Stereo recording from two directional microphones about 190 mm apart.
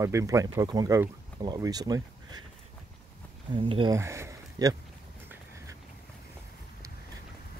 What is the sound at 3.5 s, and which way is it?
Speech, 25° right (ahead or behind).